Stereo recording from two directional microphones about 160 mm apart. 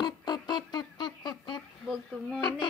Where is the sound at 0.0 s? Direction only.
25° left (ahead or behind).